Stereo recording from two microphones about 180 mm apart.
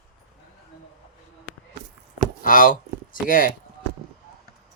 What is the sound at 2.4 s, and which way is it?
Speech, 50° left (ahead or behind).